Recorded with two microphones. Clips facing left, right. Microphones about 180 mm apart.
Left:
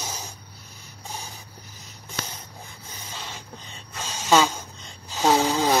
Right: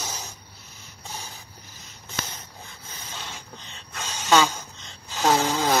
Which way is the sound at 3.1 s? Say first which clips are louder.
Left 1 dB; 5° left (ahead or behind).